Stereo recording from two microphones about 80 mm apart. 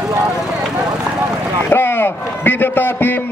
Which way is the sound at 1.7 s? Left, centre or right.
Left.